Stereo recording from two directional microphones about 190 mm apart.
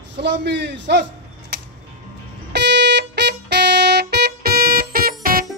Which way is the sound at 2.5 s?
60° right (ahead or behind).